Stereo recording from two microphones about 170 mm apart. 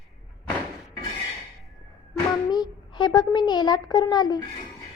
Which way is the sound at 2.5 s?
25° left (ahead or behind).